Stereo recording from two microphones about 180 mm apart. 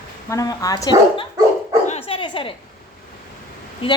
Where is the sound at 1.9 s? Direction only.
35° left (ahead or behind).